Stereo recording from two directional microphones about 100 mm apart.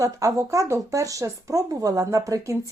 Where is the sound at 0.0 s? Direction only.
35° right (ahead or behind).